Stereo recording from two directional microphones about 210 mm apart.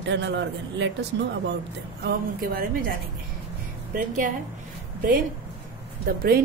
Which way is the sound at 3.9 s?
40° right (ahead or behind).